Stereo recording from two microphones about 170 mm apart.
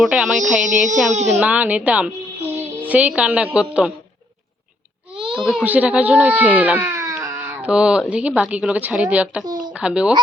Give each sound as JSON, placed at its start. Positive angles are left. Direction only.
{"t": 0.0, "sound": "speech", "side_deg": 0}
{"t": 0.9, "sound": "speech", "side_deg": -45}
{"t": 1.4, "sound": "a woman's voice", "side_deg": -10}
{"t": 5.3, "sound": "a woman's voice", "side_deg": 0}